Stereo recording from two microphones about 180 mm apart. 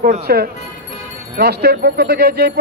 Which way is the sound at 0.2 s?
60° right (ahead or behind).